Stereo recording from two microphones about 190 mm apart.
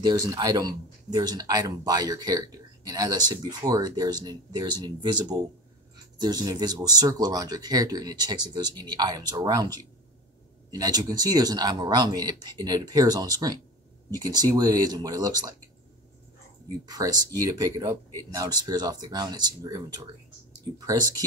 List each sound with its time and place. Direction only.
0.0 s speech: 20° right (ahead or behind)
16.8 s speech: 20° right (ahead or behind)